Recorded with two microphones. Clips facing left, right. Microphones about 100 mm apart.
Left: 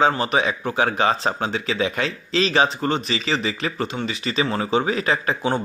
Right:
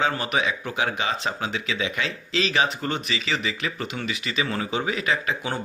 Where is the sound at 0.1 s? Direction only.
30° left (ahead or behind).